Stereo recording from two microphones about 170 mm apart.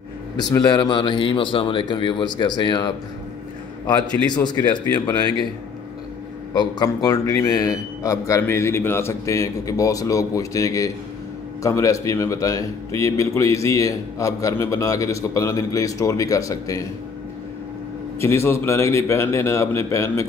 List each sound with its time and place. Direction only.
0.4 s a man's voice: 25° left (ahead or behind)
4.3 s a man's voice: 25° left (ahead or behind)
6.5 s a man's voice: 25° left (ahead or behind)
18.2 s a man's voice: 15° left (ahead or behind)